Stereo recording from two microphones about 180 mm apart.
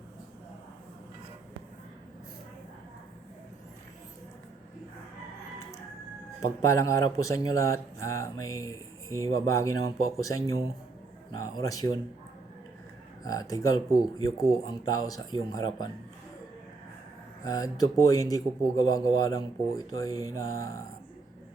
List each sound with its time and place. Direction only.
6.6 s speech: 15° left (ahead or behind)
13.2 s speech: 20° left (ahead or behind)
17.4 s speech: 20° left (ahead or behind)